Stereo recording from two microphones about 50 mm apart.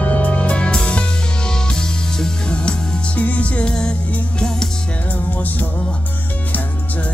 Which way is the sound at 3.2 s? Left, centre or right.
Left.